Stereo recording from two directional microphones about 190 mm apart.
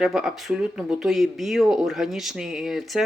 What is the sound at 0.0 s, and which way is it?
Speech, centre (ahead or behind).